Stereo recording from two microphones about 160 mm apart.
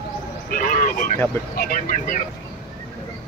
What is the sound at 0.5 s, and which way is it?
Speech, 60° left (ahead or behind).